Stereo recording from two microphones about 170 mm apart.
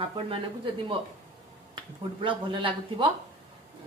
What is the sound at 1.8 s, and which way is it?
A woman's voice, 30° right (ahead or behind).